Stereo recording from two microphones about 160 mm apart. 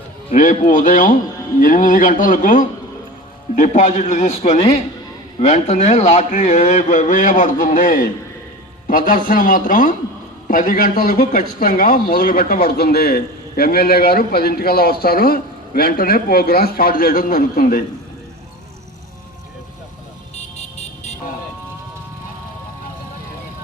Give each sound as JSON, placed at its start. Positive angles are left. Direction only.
{"t": 0.7, "sound": "a man's voice", "side_deg": 55}